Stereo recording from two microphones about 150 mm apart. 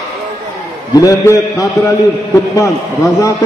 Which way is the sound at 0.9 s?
25° left (ahead or behind).